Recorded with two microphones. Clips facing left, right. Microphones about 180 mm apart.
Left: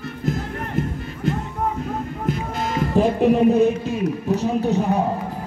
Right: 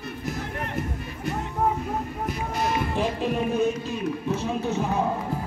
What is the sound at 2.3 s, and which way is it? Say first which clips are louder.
Music: left 1 dB; 45° left (ahead or behind).